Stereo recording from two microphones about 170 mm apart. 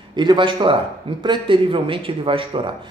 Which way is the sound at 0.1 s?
25° right (ahead or behind).